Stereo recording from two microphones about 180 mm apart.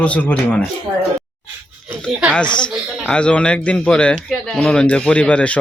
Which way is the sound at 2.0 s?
5° right (ahead or behind).